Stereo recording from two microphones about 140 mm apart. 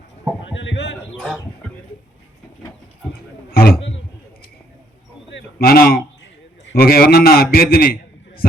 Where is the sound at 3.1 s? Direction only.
90° left.